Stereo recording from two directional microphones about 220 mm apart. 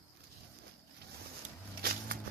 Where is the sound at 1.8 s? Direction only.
45° right (ahead or behind).